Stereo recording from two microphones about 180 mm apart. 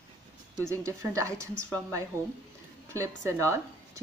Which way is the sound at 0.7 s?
15° right (ahead or behind).